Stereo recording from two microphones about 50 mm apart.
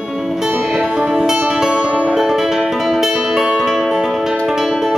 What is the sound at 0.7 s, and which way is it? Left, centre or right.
Music, centre.